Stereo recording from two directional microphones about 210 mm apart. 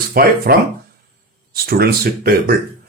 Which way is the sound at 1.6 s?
45° right (ahead or behind).